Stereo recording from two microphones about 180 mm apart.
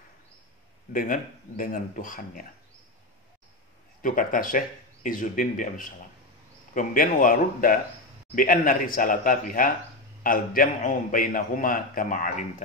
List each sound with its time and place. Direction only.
0.9 s a man's voice: 50° left (ahead or behind)
4.0 s a man's voice: 50° left (ahead or behind)